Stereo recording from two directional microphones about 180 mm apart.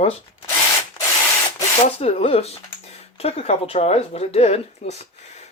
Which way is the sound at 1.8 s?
35° left (ahead or behind).